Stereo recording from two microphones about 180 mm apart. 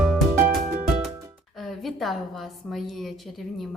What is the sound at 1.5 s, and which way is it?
A woman's voice, centre (ahead or behind).